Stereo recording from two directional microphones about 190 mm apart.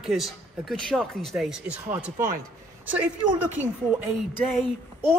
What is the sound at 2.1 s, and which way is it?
Speech, 45° right (ahead or behind).